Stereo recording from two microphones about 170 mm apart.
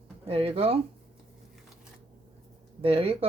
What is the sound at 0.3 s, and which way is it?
Speech, 35° right (ahead or behind).